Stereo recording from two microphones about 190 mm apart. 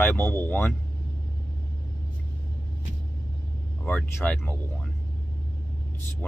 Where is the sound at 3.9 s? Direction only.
5° left (ahead or behind).